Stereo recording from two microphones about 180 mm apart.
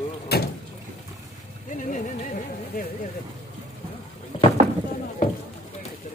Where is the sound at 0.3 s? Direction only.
60° left (ahead or behind).